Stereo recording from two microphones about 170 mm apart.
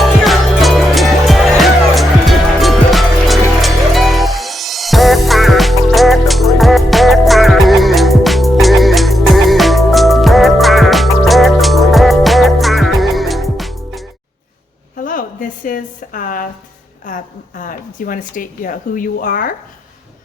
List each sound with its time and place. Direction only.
0.0 s music: centre (ahead or behind)
14.9 s a sound: 50° left (ahead or behind)
17.6 s speech: 55° left (ahead or behind)